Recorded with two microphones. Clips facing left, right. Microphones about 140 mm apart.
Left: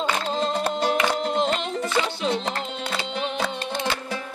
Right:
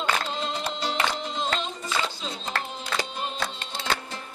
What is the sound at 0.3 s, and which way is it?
Music, 45° left (ahead or behind).